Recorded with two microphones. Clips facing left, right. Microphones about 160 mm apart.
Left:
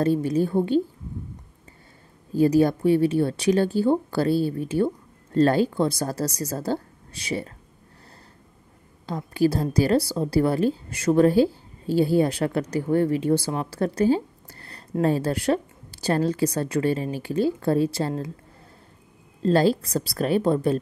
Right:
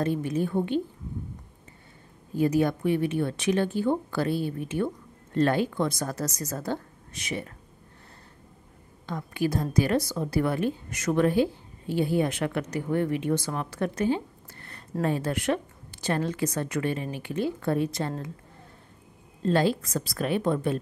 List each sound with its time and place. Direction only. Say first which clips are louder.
0.0 s speech: left 5 dB; 35° left (ahead or behind)
2.3 s speech: left 5 dB; 35° left (ahead or behind)
9.0 s speech: left 6 dB; 35° left (ahead or behind)
19.4 s speech: left 4 dB; 35° left (ahead or behind)